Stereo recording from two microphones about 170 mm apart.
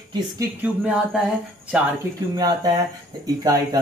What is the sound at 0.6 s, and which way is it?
Speech, 5° right (ahead or behind).